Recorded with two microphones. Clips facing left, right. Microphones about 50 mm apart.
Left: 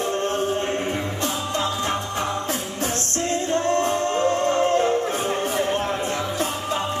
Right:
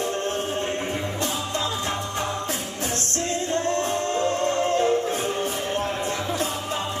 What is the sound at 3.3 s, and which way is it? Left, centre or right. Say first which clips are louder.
Music: left 3 dB; left.